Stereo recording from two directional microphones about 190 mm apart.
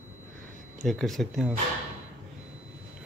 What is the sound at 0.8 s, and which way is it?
Speech, centre (ahead or behind).